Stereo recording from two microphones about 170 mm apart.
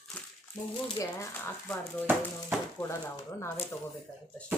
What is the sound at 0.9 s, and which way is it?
Speech, 20° left (ahead or behind).